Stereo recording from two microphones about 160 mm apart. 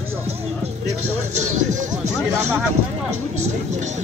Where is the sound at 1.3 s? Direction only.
50° right (ahead or behind).